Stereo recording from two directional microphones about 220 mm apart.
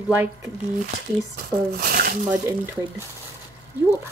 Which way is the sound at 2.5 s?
15° right (ahead or behind).